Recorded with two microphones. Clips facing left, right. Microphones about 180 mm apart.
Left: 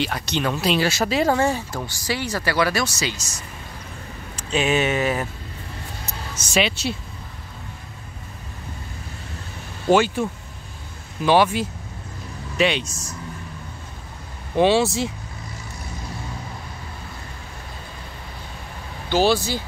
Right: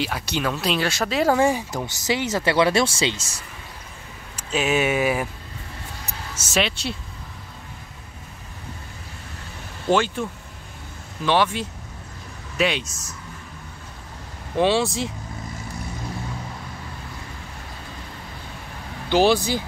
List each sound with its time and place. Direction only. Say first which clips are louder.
0.0 s speech: left 1 dB; 5° right (ahead or behind); by 3.4 s 30° right (ahead or behind)
4.4 s speech: left 1 dB; 5° right (ahead or behind)
6.0 s a sound: left 2 dB; 5° right (ahead or behind)
9.8 s speech: left 3 dB; 5° left (ahead or behind)
11.2 s speech: left 3 dB; 10° left (ahead or behind)
12.5 s speech: left 2 dB; centre (ahead or behind)
14.5 s speech: left 3 dB; centre (ahead or behind)
19.0 s speech: right 1 dB; 15° right (ahead or behind)